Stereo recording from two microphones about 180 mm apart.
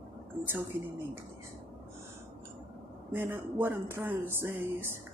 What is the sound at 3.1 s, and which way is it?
Speech, 10° right (ahead or behind).